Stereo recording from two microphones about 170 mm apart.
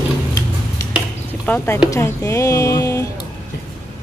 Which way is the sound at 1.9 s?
15° left (ahead or behind).